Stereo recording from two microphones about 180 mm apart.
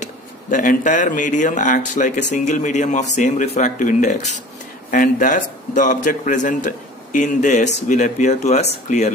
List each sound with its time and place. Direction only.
0.0 s speech: 45° left (ahead or behind)